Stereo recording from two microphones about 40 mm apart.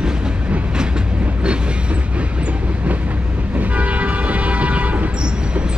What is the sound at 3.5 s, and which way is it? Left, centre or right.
Train, right.